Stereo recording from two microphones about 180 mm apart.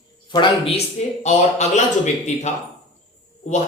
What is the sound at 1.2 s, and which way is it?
Speech, 40° left (ahead or behind).